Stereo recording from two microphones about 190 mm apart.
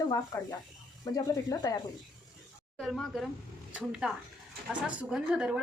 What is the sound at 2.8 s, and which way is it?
A woman's voice, centre (ahead or behind).